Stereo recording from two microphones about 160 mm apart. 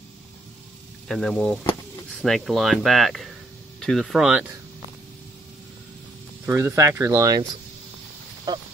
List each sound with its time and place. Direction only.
1.0 s speech: centre (ahead or behind)
6.4 s speech: 15° right (ahead or behind)
8.5 s speech: 25° right (ahead or behind)